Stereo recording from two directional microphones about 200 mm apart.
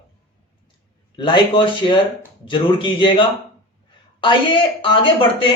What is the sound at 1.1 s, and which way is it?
A woman's voice, 25° left (ahead or behind).